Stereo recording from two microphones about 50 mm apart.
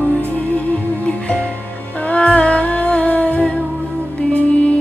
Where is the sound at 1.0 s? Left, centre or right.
Left.